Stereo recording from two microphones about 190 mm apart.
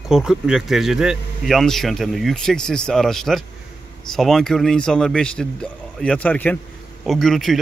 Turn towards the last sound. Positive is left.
turn(degrees=0)  # may be behind; listen again after turning